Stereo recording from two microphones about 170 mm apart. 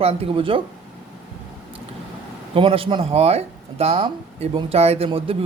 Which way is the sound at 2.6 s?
30° right (ahead or behind).